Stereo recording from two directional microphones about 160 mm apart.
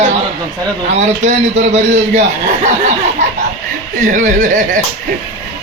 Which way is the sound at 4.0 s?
50° right (ahead or behind).